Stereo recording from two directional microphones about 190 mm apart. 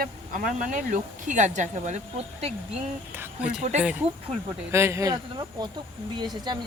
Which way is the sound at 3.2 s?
5° right (ahead or behind).